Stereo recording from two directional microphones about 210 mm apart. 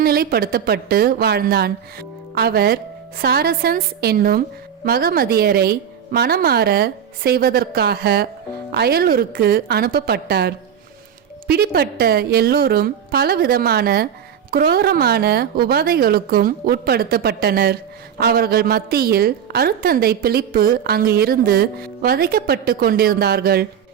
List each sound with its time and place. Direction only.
0.0 s a woman's voice: 45° right (ahead or behind)